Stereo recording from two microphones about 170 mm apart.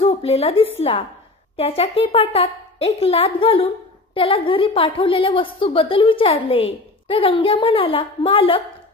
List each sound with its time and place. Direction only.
0.0 s a woman's voice: 35° left (ahead or behind)